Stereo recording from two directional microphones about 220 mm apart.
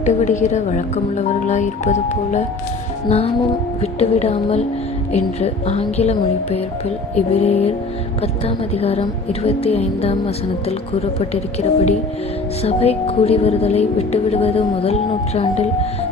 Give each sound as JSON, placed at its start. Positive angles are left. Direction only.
{"t": 0.0, "sound": "a woman's voice", "side_deg": 30}